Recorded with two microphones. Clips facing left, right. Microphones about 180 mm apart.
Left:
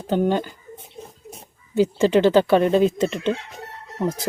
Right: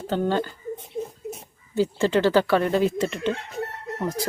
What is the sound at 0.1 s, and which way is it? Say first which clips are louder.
Speech: left 3 dB; 15° left (ahead or behind).